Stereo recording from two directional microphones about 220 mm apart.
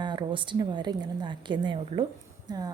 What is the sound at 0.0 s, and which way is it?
A woman's voice, 20° right (ahead or behind).